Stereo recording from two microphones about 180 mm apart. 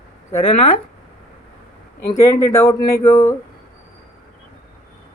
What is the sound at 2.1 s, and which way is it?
Speech, 15° left (ahead or behind).